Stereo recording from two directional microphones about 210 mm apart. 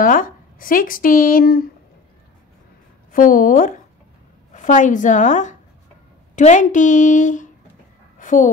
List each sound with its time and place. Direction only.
0.0 s a woman's voice: 40° left (ahead or behind)
3.1 s a woman's voice: 40° left (ahead or behind)